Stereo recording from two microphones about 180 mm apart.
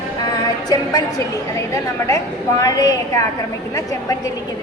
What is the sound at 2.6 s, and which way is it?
A woman's voice, 20° left (ahead or behind).